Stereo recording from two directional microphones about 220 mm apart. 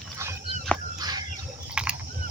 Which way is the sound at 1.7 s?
5° right (ahead or behind).